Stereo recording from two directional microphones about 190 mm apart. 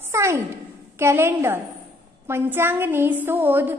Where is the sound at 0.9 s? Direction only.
15° right (ahead or behind).